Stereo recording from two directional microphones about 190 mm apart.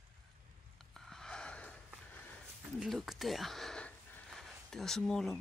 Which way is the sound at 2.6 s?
Centre (ahead or behind).